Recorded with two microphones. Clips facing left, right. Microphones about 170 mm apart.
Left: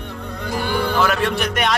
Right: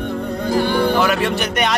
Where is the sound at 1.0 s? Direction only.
5° right (ahead or behind).